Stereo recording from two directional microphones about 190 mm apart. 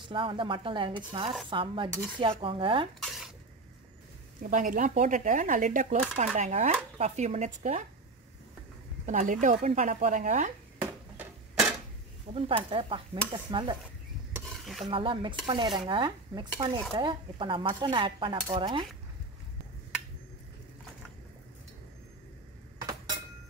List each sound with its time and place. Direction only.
0.1 s dishes: 25° right (ahead or behind)
3.1 s sneeze: centre (ahead or behind)
4.4 s speech: 45° right (ahead or behind)
9.0 s speech: 40° right (ahead or behind)
12.3 s dishes: 30° right (ahead or behind)
14.6 s stir: centre (ahead or behind)
14.9 s dishes: 25° right (ahead or behind)